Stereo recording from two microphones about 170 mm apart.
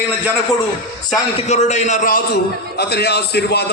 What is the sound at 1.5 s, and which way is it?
A man's voice, 40° left (ahead or behind).